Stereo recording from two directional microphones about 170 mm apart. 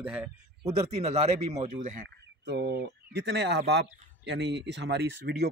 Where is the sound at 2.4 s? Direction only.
75° right (ahead or behind).